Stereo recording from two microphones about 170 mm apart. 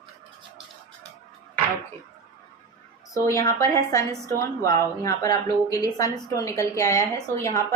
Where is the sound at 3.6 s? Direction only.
20° left (ahead or behind).